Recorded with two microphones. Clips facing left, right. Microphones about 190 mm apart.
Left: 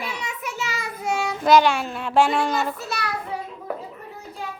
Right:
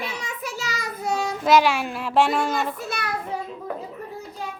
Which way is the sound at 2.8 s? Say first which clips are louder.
Even; 50° right (ahead or behind).